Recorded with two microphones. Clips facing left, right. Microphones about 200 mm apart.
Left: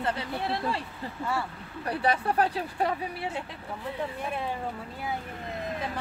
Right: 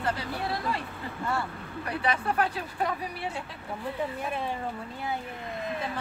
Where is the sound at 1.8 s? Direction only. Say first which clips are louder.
Left 2 dB; 35° left (ahead or behind).